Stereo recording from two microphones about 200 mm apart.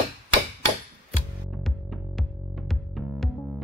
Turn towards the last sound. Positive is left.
turn(degrees=0)  # may be behind; listen again after turning